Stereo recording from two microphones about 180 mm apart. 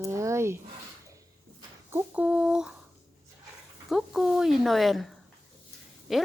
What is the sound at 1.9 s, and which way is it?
Speech, 10° right (ahead or behind).